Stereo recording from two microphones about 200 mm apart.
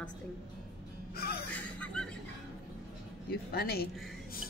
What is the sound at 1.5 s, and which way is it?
Speech, 5° left (ahead or behind).